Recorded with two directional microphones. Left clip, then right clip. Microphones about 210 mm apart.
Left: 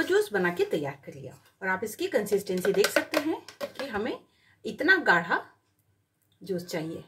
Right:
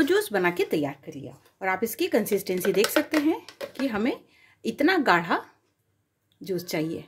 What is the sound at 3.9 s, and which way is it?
Speech, 40° right (ahead or behind).